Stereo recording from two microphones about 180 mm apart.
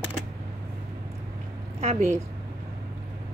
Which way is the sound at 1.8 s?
35° right (ahead or behind).